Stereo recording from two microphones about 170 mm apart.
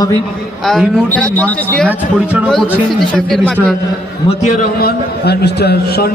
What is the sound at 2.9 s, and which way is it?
Speech, centre (ahead or behind).